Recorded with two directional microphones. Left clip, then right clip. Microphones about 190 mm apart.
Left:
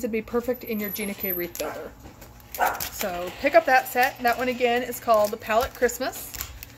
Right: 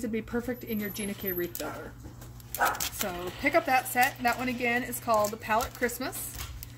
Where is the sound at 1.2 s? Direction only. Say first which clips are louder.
Left 2 dB; 10° right (ahead or behind).